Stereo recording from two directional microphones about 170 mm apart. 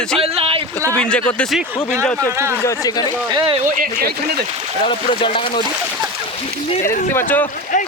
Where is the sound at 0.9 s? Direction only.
5° left (ahead or behind).